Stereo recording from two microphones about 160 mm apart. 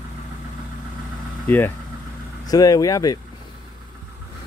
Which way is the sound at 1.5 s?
15° left (ahead or behind).